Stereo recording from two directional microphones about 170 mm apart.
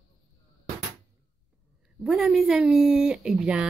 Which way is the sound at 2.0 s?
Centre (ahead or behind).